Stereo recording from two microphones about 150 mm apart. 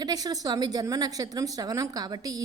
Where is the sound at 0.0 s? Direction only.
25° right (ahead or behind).